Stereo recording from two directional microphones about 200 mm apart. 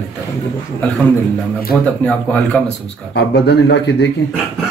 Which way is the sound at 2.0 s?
5° left (ahead or behind).